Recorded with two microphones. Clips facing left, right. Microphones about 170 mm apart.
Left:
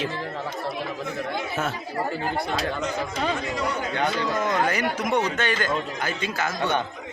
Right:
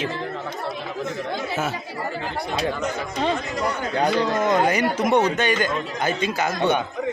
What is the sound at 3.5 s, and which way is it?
Speech, 35° right (ahead or behind).